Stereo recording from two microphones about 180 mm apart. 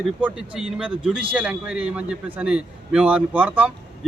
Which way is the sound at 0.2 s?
5° right (ahead or behind).